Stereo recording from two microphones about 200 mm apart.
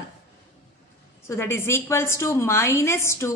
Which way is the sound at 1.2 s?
10° left (ahead or behind).